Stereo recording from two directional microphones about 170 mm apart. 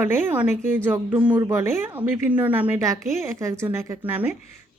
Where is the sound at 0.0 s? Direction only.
10° right (ahead or behind).